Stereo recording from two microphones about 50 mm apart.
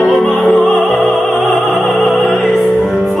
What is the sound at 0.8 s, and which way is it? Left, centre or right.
Opera, left.